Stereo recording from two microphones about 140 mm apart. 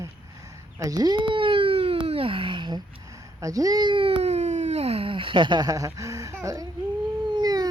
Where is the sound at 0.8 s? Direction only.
25° right (ahead or behind).